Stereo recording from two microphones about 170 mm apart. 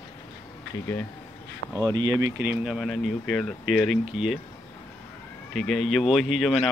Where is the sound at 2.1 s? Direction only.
15° right (ahead or behind).